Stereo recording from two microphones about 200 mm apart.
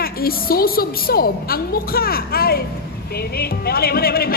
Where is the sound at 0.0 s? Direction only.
50° left (ahead or behind).